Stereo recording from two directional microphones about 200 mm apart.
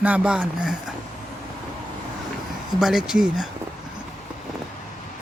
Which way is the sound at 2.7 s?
Centre (ahead or behind).